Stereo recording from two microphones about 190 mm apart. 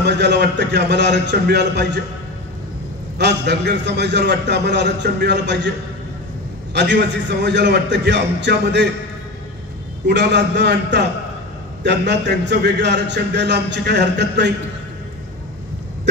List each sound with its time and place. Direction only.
0.0 s a man's voice: 65° right (ahead or behind)
3.2 s a man's voice: 65° right (ahead or behind)
6.7 s a man's voice: 65° right (ahead or behind)
10.0 s a man's voice: 65° right (ahead or behind)